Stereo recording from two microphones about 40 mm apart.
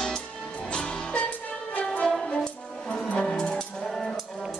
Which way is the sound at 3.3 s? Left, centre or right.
Centre.